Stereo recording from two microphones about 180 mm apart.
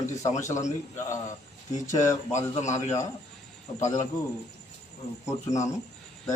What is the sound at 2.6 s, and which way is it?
Speech, 40° left (ahead or behind).